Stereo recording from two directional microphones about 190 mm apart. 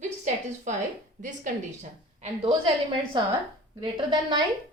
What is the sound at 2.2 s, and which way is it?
A woman's voice, 25° right (ahead or behind).